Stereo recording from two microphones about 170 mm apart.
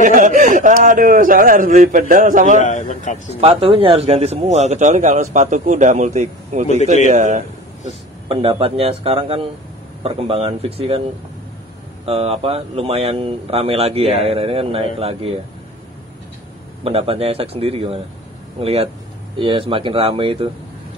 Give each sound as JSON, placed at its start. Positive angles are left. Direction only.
{"t": 0.0, "sound": "a man's voice", "side_deg": -50}
{"t": 2.6, "sound": "a man's voice", "side_deg": 50}
{"t": 3.3, "sound": "a man's voice", "side_deg": -35}
{"t": 12.1, "sound": "speech", "side_deg": -35}
{"t": 16.8, "sound": "speech", "side_deg": -35}